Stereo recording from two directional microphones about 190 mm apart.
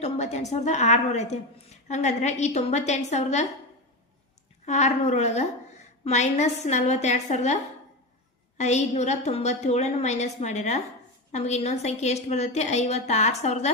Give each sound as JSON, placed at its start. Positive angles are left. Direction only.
{"t": 0.0, "sound": "a woman's voice", "side_deg": 35}
{"t": 4.6, "sound": "a woman's voice", "side_deg": 40}